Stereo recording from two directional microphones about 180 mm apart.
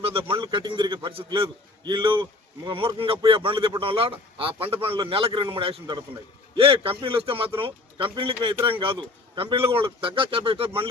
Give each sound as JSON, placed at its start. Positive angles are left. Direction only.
{"t": 0.0, "sound": "a man's voice", "side_deg": -30}